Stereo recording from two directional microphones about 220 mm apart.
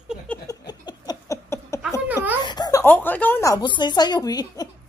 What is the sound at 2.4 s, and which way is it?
Speech, 20° left (ahead or behind).